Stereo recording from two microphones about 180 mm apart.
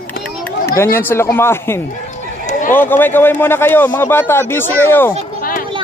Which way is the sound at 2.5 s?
45° left (ahead or behind).